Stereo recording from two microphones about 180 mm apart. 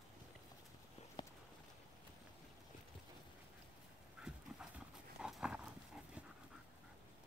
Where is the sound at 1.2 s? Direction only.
25° left (ahead or behind).